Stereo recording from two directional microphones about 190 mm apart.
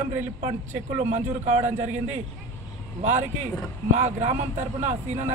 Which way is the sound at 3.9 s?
35° right (ahead or behind).